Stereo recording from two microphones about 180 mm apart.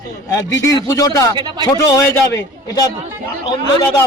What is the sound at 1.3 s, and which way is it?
Speech, 25° right (ahead or behind).